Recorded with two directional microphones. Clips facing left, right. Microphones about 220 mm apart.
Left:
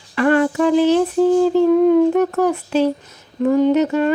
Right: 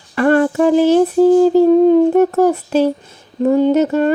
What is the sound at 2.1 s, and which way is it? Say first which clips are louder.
Speech: right 5 dB; 40° right (ahead or behind).